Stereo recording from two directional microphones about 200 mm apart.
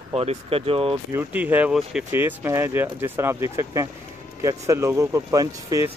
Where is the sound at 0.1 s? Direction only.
30° right (ahead or behind).